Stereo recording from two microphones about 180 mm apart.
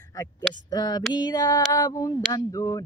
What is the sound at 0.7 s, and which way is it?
Speech, 20° left (ahead or behind).